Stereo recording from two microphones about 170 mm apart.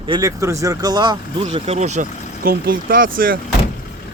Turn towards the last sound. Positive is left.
turn(degrees=-55)  # may be behind; listen again after turning